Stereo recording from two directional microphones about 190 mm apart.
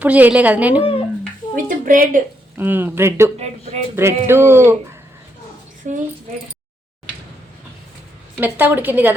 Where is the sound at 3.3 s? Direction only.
35° right (ahead or behind).